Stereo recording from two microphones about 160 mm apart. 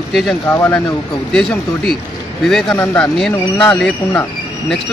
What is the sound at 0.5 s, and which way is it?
Speech, 15° left (ahead or behind).